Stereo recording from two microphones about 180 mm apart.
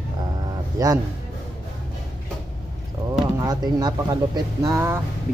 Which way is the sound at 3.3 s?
20° right (ahead or behind).